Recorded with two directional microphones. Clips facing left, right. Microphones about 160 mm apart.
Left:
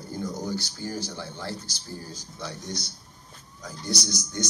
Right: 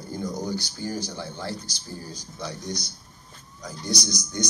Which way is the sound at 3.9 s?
15° right (ahead or behind).